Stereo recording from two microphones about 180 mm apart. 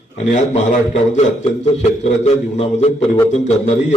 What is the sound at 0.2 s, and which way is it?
A man's voice, 40° left (ahead or behind).